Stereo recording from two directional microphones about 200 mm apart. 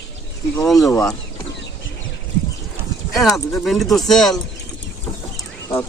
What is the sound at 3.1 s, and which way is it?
Speech, centre (ahead or behind).